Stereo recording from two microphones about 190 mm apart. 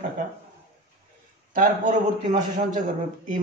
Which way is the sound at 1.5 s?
45° right (ahead or behind).